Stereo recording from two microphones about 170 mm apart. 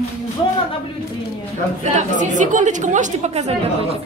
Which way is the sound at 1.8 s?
45° right (ahead or behind).